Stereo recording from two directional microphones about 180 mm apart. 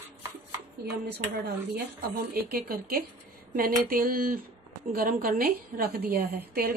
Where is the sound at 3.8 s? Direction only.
55° right (ahead or behind).